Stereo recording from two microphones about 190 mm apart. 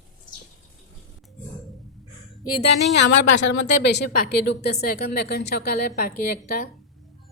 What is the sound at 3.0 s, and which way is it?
A woman's voice, 65° left (ahead or behind).